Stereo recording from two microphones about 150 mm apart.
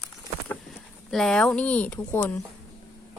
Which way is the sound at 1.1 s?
Centre (ahead or behind).